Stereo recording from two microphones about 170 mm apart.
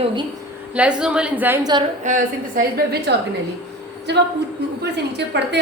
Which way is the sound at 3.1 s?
75° right (ahead or behind).